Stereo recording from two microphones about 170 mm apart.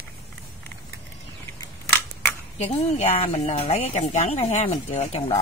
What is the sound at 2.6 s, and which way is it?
Speech, 40° left (ahead or behind).